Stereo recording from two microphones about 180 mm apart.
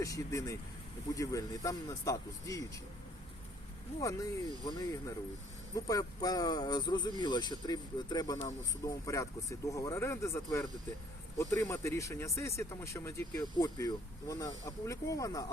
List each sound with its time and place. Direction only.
0.0 s speech: 15° left (ahead or behind)
4.0 s speech: 20° left (ahead or behind)